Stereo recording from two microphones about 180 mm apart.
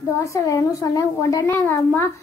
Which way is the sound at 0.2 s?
15° left (ahead or behind).